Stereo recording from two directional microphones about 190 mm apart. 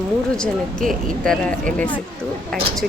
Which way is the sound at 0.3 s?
5° left (ahead or behind).